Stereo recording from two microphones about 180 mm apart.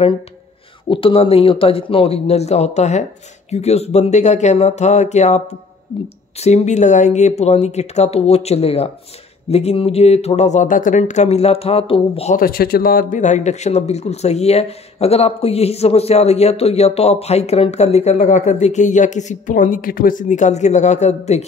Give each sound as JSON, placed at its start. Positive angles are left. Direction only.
{"t": 0.8, "sound": "speech", "side_deg": 30}
{"t": 12.4, "sound": "speech", "side_deg": 55}